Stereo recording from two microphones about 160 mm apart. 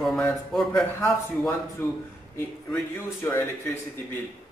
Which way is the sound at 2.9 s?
15° left (ahead or behind).